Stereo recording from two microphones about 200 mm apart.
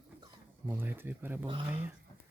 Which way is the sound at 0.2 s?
15° right (ahead or behind).